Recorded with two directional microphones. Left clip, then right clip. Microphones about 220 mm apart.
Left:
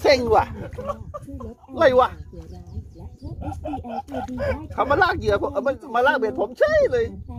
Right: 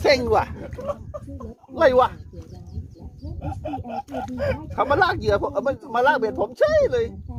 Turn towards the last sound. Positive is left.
turn(degrees=10)  # may be behind; listen again after turning